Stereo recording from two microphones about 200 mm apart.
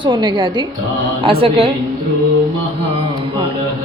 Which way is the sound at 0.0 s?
25° right (ahead or behind).